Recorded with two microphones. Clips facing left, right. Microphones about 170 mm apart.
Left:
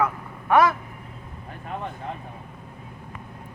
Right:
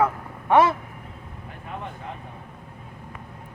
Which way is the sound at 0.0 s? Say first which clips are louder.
Right 2 dB; 25° right (ahead or behind).